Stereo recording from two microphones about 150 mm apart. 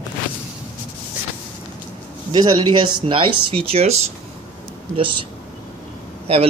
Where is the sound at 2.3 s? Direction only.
30° right (ahead or behind).